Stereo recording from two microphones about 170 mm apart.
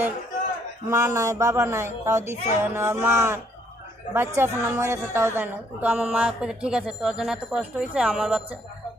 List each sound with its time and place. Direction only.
0.8 s a woman's voice: 15° right (ahead or behind)